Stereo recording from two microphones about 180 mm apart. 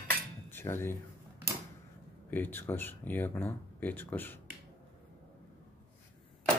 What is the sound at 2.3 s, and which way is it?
Speech, 10° left (ahead or behind).